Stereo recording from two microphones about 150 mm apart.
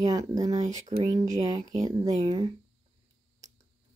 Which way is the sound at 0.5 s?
50° right (ahead or behind).